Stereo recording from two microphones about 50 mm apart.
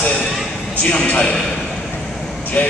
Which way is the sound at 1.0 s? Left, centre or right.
Left.